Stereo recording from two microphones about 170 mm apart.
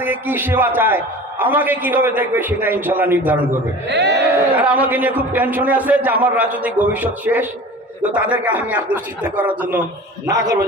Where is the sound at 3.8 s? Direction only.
90° right.